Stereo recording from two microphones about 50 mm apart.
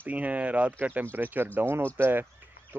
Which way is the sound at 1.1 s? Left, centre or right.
Right.